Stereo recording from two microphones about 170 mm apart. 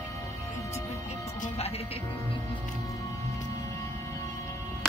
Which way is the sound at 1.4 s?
35° left (ahead or behind).